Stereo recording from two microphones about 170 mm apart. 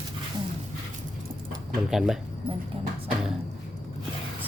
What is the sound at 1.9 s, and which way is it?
Speech, centre (ahead or behind).